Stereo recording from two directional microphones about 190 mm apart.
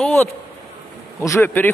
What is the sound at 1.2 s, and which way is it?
Speech, 15° left (ahead or behind).